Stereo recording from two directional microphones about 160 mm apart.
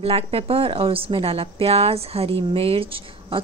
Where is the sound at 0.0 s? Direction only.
40° right (ahead or behind).